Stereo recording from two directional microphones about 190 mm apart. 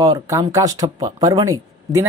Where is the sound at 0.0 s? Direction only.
20° right (ahead or behind).